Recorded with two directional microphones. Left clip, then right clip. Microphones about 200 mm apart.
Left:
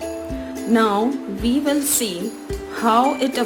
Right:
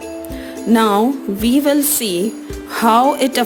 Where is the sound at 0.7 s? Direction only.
50° right (ahead or behind).